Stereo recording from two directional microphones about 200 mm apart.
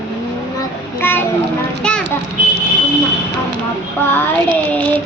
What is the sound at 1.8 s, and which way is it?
Children playing, 5° left (ahead or behind).